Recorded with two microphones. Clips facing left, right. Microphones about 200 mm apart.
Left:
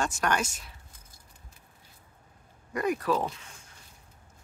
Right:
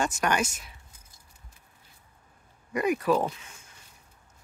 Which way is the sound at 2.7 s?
10° right (ahead or behind).